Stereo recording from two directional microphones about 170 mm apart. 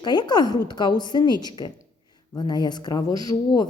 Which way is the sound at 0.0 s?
25° left (ahead or behind).